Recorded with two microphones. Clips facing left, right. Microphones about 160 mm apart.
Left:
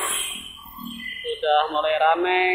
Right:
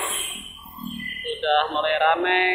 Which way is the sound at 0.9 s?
55° right (ahead or behind).